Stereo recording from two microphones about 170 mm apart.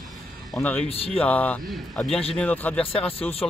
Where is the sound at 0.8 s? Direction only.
35° left (ahead or behind).